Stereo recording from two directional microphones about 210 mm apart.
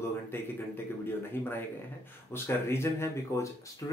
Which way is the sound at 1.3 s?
10° left (ahead or behind).